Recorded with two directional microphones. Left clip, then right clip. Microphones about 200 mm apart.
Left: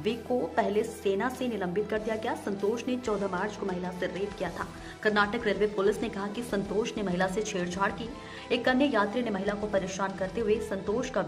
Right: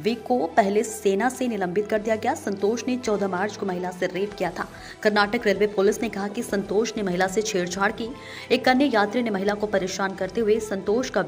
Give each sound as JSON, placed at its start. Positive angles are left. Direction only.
{"t": 0.0, "sound": "a woman's voice", "side_deg": -15}